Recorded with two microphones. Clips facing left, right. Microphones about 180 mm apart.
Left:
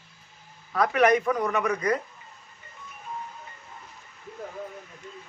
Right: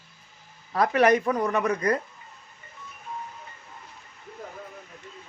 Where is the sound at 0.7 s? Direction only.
35° right (ahead or behind).